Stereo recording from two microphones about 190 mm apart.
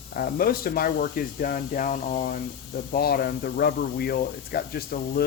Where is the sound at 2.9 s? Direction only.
55° left (ahead or behind).